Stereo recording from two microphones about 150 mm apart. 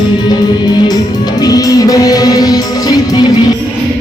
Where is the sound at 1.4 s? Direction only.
25° left (ahead or behind).